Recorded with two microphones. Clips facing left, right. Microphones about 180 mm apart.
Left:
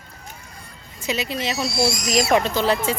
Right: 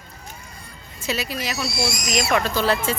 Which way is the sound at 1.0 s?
20° left (ahead or behind).